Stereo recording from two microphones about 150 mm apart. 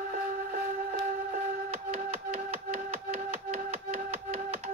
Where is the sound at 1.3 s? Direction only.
50° right (ahead or behind).